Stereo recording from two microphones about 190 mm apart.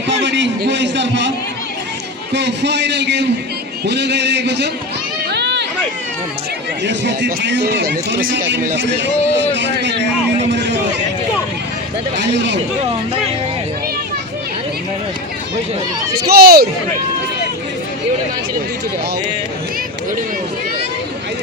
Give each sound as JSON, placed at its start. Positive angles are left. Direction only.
{"t": 0.1, "sound": "a man's voice", "side_deg": -70}
{"t": 2.3, "sound": "speech", "side_deg": -65}
{"t": 5.3, "sound": "a sound", "side_deg": -65}
{"t": 6.8, "sound": "speech", "side_deg": -70}
{"t": 9.0, "sound": "a man's voice", "side_deg": -70}
{"t": 12.1, "sound": "a man's voice", "side_deg": -70}
{"t": 16.2, "sound": "speech", "side_deg": -55}